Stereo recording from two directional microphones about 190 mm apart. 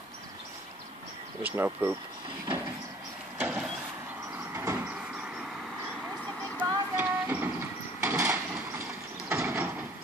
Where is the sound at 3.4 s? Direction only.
10° right (ahead or behind).